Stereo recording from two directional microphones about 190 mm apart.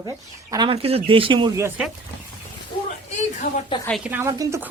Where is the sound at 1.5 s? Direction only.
15° right (ahead or behind).